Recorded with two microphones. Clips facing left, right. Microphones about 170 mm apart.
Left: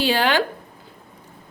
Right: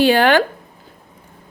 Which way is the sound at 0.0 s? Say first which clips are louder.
Right 7 dB; 55° right (ahead or behind).